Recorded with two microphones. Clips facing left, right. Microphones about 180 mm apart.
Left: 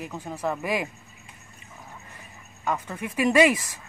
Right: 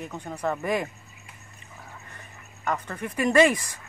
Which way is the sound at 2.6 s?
5° left (ahead or behind).